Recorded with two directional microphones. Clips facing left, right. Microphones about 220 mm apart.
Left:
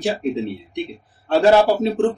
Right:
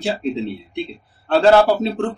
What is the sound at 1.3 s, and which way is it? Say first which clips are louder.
Speech: right 1 dB; 15° left (ahead or behind).